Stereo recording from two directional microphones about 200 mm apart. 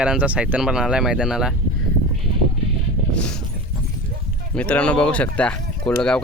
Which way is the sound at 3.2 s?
5° left (ahead or behind).